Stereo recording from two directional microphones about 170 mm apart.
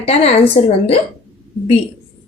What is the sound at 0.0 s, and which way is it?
Speech, 35° left (ahead or behind).